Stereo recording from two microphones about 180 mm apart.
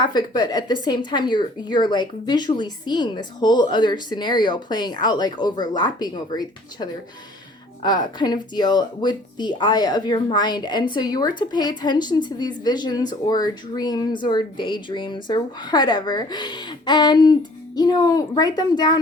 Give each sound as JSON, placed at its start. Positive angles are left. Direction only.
{"t": 0.0, "sound": "speech", "side_deg": 25}